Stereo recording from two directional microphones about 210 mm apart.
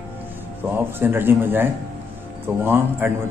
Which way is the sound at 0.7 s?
10° right (ahead or behind).